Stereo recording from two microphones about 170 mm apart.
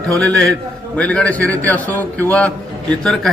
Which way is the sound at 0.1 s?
5° left (ahead or behind).